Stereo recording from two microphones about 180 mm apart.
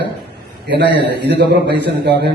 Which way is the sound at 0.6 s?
75° right (ahead or behind).